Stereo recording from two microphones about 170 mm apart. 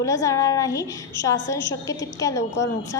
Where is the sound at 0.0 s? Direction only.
20° left (ahead or behind).